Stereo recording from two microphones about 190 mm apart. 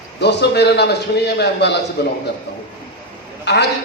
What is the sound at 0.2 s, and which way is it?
A man's voice, 65° left (ahead or behind).